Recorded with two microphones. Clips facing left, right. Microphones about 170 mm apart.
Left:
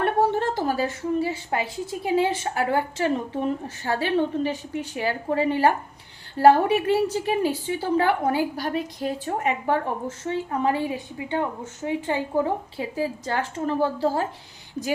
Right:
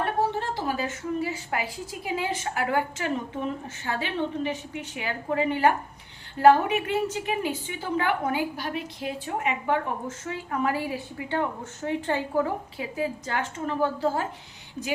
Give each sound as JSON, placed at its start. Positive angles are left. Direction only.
{"t": 0.0, "sound": "a woman's voice", "side_deg": 50}